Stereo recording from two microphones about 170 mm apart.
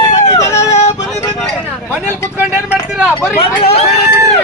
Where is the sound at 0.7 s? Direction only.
40° left (ahead or behind).